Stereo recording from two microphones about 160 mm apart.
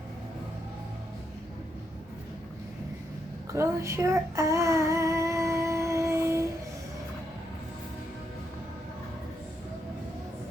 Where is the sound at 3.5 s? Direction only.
20° right (ahead or behind).